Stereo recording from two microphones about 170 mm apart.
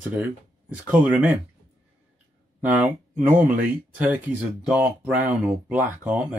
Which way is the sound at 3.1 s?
50° right (ahead or behind).